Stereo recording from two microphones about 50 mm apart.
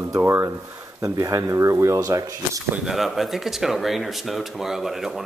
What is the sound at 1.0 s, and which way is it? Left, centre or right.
Speech, right.